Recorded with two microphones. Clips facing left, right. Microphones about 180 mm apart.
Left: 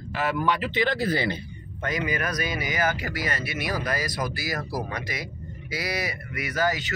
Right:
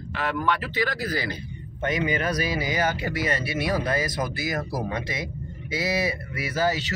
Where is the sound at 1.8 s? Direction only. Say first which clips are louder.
Right 3 dB; 25° right (ahead or behind).